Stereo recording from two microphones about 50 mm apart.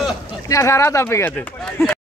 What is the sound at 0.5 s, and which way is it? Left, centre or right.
Speech, left.